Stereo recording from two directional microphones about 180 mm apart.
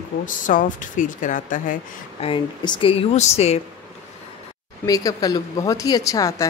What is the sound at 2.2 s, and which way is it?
Speech, 25° left (ahead or behind).